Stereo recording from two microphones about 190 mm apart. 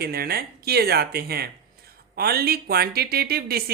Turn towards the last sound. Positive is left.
turn(degrees=-55)  # may be behind; listen again after turning